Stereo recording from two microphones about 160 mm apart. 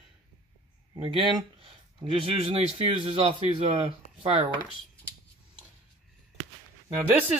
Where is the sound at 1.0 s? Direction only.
35° right (ahead or behind).